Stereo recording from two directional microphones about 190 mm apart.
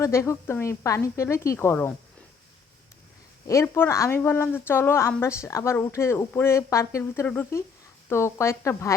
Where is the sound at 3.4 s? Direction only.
15° left (ahead or behind).